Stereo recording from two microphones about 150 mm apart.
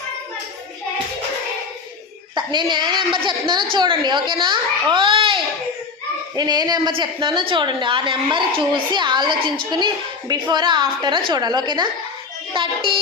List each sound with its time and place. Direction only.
2.3 s a woman's voice: 30° right (ahead or behind)